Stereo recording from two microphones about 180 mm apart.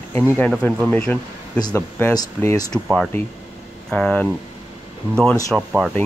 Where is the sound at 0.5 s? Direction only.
5° left (ahead or behind).